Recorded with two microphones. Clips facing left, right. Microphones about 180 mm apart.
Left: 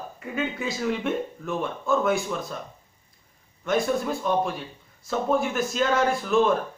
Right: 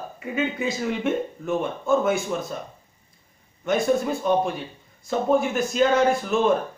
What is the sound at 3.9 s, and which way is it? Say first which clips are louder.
Speech: right 3 dB; centre (ahead or behind).